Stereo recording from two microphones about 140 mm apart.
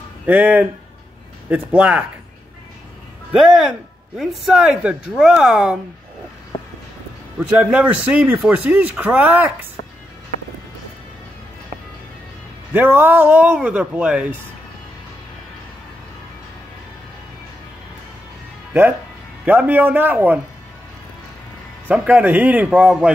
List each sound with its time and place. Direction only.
0.3 s speech: 10° right (ahead or behind)
4.2 s speech: centre (ahead or behind)
7.3 s speech: 10° right (ahead or behind)
12.7 s speech: 15° right (ahead or behind)
18.7 s speech: 15° right (ahead or behind)
21.8 s speech: 10° right (ahead or behind)